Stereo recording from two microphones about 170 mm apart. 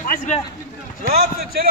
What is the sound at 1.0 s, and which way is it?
Speech, 65° right (ahead or behind).